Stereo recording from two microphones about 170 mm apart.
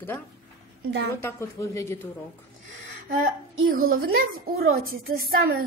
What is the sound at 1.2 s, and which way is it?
Speech, 15° left (ahead or behind).